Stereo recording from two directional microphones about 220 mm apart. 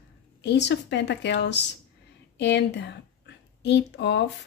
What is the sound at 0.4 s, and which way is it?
A woman's voice, 50° left (ahead or behind).